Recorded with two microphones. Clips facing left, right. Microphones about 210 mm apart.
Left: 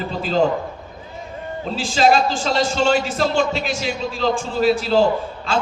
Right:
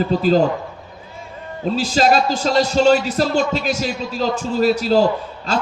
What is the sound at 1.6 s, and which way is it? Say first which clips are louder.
A man's voice: right 1 dB; 40° right (ahead or behind).